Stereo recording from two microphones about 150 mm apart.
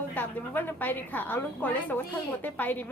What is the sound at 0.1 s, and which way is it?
A woman's voice, 10° left (ahead or behind).